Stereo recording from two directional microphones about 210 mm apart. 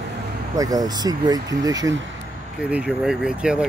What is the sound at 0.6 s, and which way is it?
Speech, 15° right (ahead or behind).